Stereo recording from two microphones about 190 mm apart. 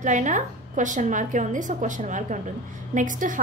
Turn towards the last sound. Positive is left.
turn(degrees=-45)  # may be behind; listen again after turning